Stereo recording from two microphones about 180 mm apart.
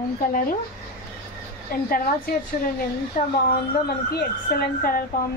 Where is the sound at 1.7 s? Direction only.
55° left (ahead or behind).